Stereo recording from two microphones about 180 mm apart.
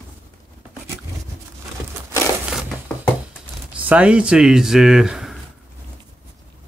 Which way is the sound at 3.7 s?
10° right (ahead or behind).